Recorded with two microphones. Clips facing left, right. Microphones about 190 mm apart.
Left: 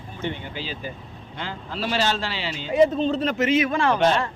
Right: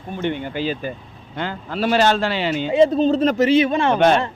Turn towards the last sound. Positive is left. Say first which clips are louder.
# right 5 dB
turn(degrees=-60)  # may be behind; listen again after turning